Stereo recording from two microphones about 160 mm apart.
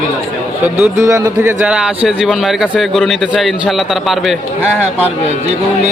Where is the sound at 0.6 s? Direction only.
15° right (ahead or behind).